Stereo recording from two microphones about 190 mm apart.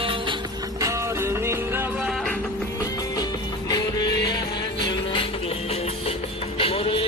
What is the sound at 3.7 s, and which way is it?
Music, 20° left (ahead or behind).